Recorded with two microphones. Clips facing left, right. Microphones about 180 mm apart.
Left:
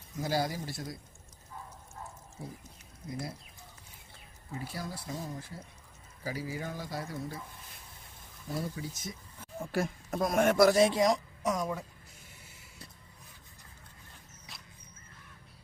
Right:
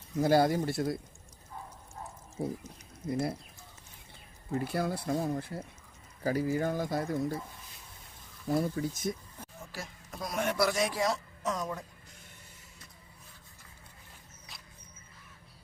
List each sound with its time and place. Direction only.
0.2 s speech: 55° right (ahead or behind)
2.4 s speech: 55° right (ahead or behind)
4.5 s speech: 60° right (ahead or behind)
8.5 s speech: 50° right (ahead or behind)
9.6 s speech: 55° left (ahead or behind)
10.8 s a woman's voice: 25° left (ahead or behind)
14.5 s a sound: centre (ahead or behind)